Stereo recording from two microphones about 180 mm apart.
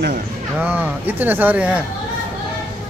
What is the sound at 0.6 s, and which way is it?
Speech, 10° right (ahead or behind).